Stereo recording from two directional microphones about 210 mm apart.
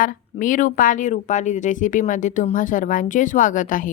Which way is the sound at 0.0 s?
40° left (ahead or behind).